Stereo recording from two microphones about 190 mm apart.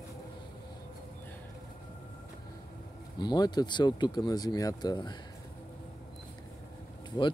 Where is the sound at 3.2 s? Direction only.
20° left (ahead or behind).